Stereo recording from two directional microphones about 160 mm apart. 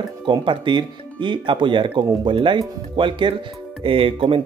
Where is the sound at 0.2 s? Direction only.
30° right (ahead or behind).